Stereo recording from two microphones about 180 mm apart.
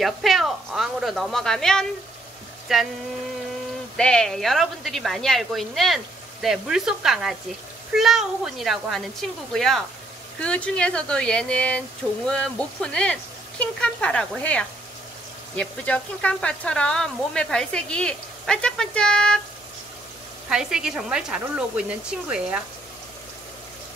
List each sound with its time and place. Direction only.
0.0 s speech: centre (ahead or behind)
3.9 s speech: 5° left (ahead or behind)
20.4 s speech: 5° right (ahead or behind)